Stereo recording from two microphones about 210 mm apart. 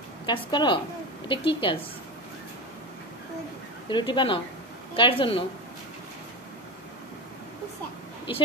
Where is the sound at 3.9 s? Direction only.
25° left (ahead or behind).